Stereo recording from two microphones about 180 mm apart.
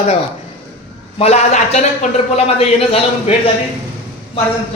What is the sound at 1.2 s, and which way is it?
A man's voice, 40° left (ahead or behind).